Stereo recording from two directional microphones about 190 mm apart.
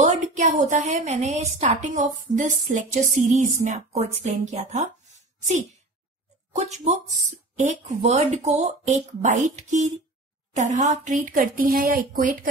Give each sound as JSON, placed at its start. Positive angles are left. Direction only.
{"t": 0.0, "sound": "a woman's voice", "side_deg": -40}
{"t": 6.5, "sound": "a woman's voice", "side_deg": -35}